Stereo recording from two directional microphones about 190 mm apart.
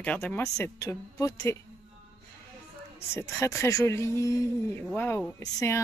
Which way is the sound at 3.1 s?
15° left (ahead or behind).